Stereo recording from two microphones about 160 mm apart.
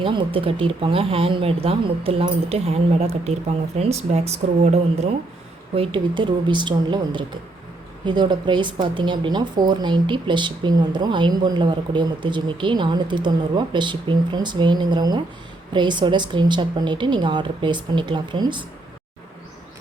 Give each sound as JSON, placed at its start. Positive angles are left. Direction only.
{"t": 0.0, "sound": "speech", "side_deg": -30}